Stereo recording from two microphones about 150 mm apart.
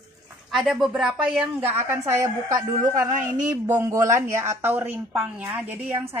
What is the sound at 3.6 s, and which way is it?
Speech, 15° right (ahead or behind).